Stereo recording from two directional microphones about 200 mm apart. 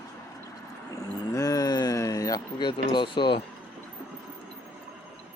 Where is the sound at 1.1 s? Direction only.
15° left (ahead or behind).